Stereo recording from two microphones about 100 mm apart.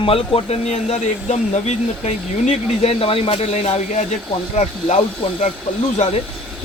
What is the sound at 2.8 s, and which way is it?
Speech, 70° left (ahead or behind).